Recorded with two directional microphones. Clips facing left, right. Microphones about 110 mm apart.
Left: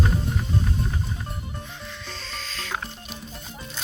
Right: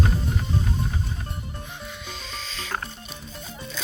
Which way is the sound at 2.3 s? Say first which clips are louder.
Even; 5° right (ahead or behind).